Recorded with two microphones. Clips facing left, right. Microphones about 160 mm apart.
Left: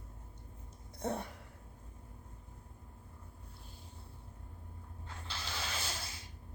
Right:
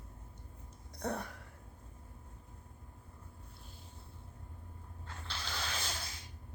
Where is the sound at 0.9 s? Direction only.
25° left (ahead or behind).